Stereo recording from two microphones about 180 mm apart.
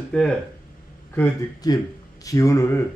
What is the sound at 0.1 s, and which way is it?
Speech, 5° left (ahead or behind).